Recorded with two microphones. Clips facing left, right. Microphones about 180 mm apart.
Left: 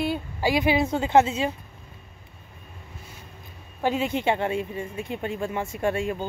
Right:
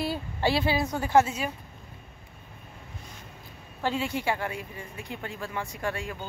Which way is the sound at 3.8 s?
20° left (ahead or behind).